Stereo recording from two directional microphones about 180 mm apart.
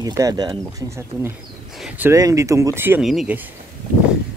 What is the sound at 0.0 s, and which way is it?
Speech, 20° right (ahead or behind).